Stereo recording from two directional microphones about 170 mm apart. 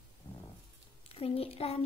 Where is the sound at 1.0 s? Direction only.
35° left (ahead or behind).